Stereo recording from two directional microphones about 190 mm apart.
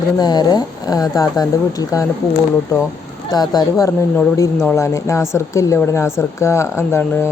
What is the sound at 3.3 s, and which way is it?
Speech, 20° left (ahead or behind).